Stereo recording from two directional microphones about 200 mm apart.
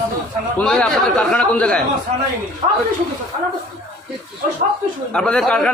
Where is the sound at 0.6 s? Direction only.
Centre (ahead or behind).